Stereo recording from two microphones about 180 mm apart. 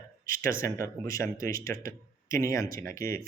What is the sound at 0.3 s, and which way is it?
Speech, 50° right (ahead or behind).